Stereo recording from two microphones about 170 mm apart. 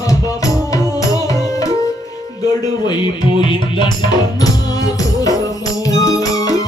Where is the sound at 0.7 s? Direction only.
20° left (ahead or behind).